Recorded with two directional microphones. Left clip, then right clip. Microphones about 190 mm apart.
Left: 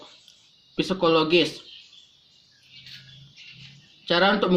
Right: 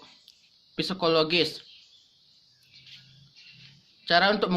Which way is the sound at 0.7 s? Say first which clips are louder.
Left 4 dB; 55° right (ahead or behind).